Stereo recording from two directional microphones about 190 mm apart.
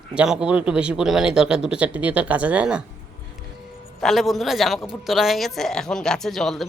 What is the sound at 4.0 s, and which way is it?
Speech, centre (ahead or behind).